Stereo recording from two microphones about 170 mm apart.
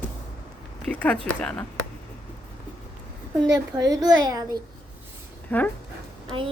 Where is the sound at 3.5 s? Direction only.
20° right (ahead or behind).